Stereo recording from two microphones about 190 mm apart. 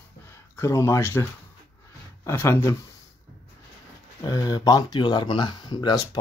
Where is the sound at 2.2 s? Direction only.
15° left (ahead or behind).